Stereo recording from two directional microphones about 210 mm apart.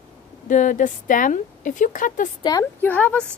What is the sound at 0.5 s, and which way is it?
Speech, 40° left (ahead or behind).